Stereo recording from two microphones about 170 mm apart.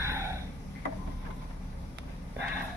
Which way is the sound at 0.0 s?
15° right (ahead or behind).